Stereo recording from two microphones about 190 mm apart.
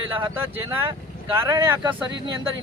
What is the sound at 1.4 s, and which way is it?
Speech, 15° right (ahead or behind).